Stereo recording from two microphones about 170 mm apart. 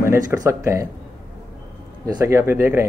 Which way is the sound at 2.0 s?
20° right (ahead or behind).